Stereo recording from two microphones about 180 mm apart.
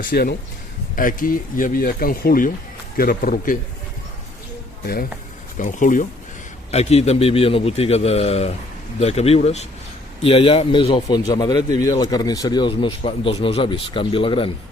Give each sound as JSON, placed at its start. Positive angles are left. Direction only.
{"t": 0.1, "sound": "speech", "side_deg": 55}
{"t": 5.5, "sound": "a man's voice", "side_deg": 45}